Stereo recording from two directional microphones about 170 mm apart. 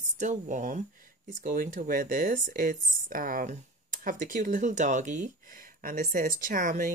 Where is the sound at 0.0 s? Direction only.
45° right (ahead or behind).